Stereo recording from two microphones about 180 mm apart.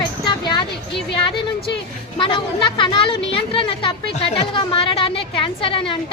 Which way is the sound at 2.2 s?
25° left (ahead or behind).